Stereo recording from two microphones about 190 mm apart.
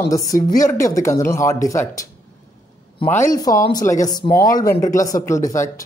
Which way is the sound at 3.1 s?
15° left (ahead or behind).